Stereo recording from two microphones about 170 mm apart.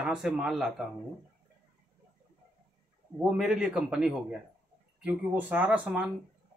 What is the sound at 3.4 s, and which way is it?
Speech, 5° right (ahead or behind).